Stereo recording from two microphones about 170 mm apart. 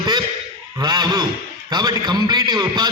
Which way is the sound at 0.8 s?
25° right (ahead or behind).